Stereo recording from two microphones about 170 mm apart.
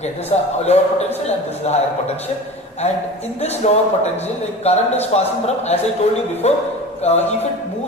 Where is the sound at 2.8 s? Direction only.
40° left (ahead or behind).